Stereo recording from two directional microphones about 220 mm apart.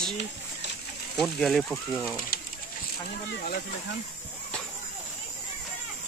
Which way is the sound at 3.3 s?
45° left (ahead or behind).